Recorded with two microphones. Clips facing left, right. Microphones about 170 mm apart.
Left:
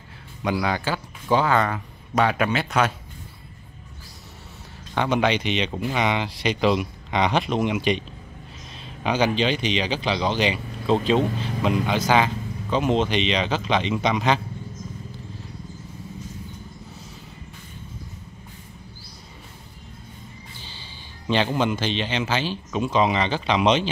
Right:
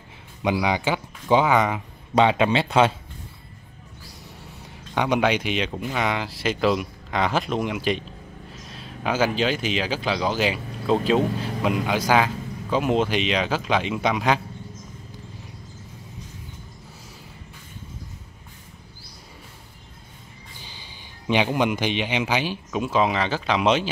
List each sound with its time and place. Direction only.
0.4 s speech: 15° right (ahead or behind)
4.9 s speech: 10° right (ahead or behind)
5.7 s speech: 5° left (ahead or behind)
21.3 s speech: 15° right (ahead or behind)